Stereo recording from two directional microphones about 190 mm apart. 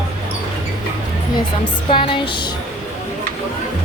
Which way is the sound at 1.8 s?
30° left (ahead or behind).